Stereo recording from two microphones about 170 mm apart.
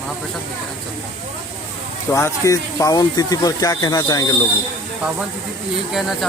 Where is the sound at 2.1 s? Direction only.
15° left (ahead or behind).